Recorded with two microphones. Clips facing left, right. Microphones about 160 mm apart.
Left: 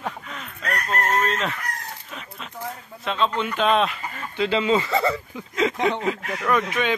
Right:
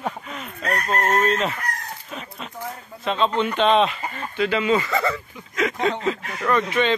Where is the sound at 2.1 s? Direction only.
Centre (ahead or behind).